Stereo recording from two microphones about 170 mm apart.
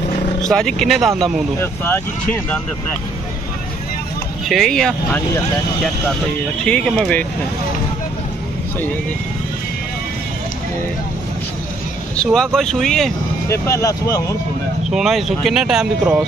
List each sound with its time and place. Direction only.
0.5 s speech: centre (ahead or behind)
1.6 s speech: 10° left (ahead or behind)
4.5 s speech: centre (ahead or behind)
6.6 s speech: 5° left (ahead or behind)
12.2 s speech: 5° left (ahead or behind)
13.5 s speech: 15° left (ahead or behind)
14.9 s speech: centre (ahead or behind)